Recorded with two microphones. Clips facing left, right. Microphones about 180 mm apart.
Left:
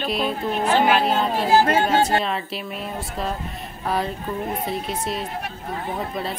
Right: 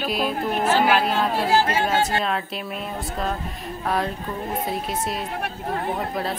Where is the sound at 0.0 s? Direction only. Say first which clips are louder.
Even; centre (ahead or behind).